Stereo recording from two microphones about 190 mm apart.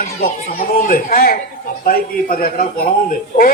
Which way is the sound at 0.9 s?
50° left (ahead or behind).